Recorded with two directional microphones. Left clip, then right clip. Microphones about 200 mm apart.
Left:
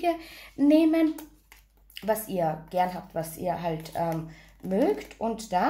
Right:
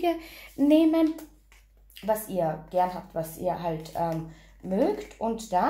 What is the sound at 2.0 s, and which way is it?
A woman's voice, 10° left (ahead or behind).